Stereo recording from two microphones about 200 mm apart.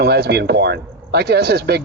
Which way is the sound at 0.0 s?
55° right (ahead or behind).